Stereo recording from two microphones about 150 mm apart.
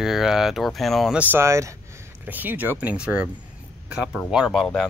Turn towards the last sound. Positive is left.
turn(degrees=5)  # may be behind; listen again after turning